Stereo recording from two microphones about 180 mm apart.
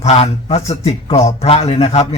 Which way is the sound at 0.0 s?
35° left (ahead or behind).